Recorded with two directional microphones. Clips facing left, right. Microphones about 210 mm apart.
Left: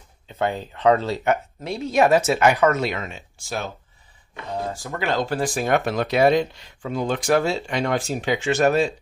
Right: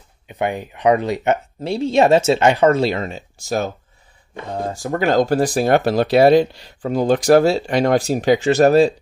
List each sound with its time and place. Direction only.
0.3 s speech: 15° right (ahead or behind); by 3.7 s 40° right (ahead or behind)
4.9 s speech: 45° right (ahead or behind)